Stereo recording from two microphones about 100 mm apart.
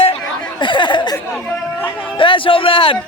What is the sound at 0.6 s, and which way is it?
Speech, 55° left (ahead or behind).